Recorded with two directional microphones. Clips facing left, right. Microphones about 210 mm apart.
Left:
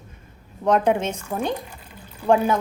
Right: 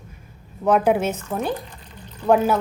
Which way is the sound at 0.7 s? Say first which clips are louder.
Right 1 dB; 5° right (ahead or behind).